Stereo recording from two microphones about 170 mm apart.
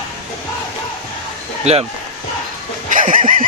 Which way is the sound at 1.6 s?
40° right (ahead or behind).